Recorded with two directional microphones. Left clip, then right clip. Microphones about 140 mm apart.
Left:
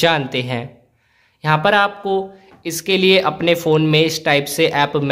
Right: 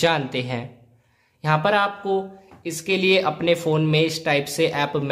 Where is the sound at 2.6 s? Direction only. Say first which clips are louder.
Left 5 dB; 30° left (ahead or behind).